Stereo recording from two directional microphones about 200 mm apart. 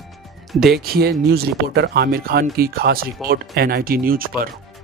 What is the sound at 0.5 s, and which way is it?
Speech, centre (ahead or behind).